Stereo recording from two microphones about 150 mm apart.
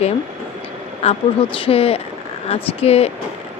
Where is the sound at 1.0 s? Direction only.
45° left (ahead or behind).